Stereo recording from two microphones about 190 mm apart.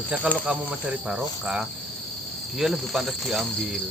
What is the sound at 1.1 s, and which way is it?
Cricket, 5° right (ahead or behind).